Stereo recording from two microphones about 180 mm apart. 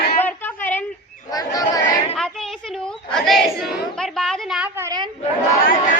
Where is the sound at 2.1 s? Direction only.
Centre (ahead or behind); by 5.0 s 15° right (ahead or behind).